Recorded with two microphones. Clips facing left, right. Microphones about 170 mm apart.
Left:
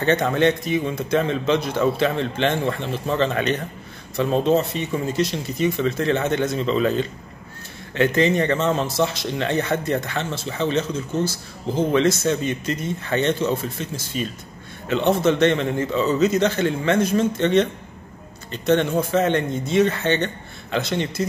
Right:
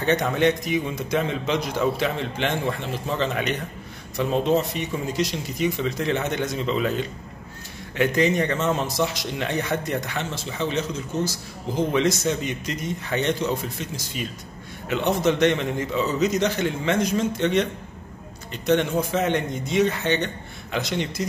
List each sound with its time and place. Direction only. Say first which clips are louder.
0.0 s a man's voice: left 2 dB; 10° right (ahead or behind)